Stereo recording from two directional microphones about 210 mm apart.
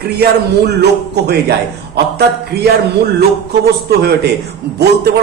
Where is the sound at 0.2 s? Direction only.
50° right (ahead or behind).